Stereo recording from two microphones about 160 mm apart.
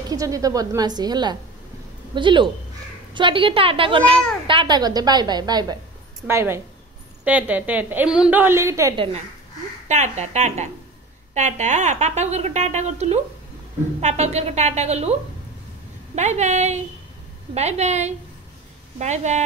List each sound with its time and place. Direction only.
0.1 s a woman's voice: 20° right (ahead or behind)
6.2 s a woman's voice: 15° right (ahead or behind)
8.9 s a woman's voice: 35° right (ahead or behind)
9.8 s a woman's voice: 45° right (ahead or behind)
16.2 s a woman's voice: 45° right (ahead or behind)